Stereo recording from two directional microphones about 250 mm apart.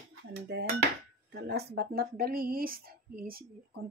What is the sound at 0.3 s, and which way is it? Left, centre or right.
Dishes, right.